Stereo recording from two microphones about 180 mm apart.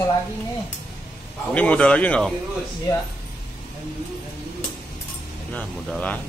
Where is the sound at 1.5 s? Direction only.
10° left (ahead or behind).